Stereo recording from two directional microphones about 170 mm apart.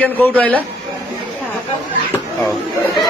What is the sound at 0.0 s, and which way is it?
Speech, 10° left (ahead or behind).